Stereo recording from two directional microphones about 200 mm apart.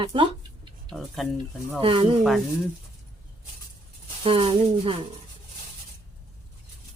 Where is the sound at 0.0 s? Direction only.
25° right (ahead or behind).